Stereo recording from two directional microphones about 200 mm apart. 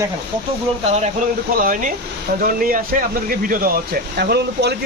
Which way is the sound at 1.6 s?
40° right (ahead or behind).